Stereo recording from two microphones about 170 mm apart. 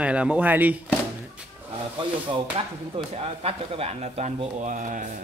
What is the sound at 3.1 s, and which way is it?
Speech, 35° right (ahead or behind).